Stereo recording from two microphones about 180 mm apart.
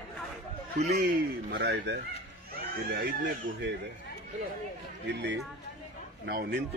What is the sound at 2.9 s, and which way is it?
Speech, 50° right (ahead or behind).